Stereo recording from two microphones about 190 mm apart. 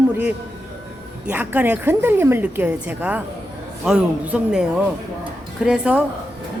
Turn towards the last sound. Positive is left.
turn(degrees=-5)  # may be behind; listen again after turning